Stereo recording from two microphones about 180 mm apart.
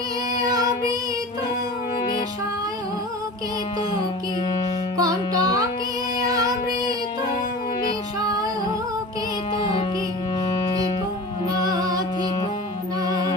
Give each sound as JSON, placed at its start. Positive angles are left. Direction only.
{"t": 4.9, "sound": "music", "side_deg": -20}
{"t": 9.6, "sound": "music", "side_deg": 30}
{"t": 11.7, "sound": "music", "side_deg": -20}